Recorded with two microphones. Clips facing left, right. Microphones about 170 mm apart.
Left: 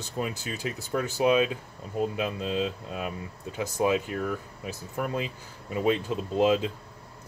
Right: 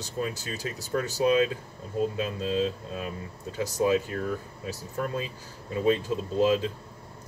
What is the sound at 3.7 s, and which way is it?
Speech, 20° left (ahead or behind).